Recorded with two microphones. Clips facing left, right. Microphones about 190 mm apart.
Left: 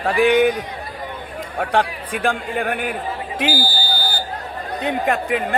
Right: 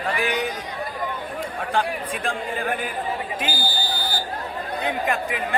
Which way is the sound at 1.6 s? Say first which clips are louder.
Left 5 dB; 65° left (ahead or behind).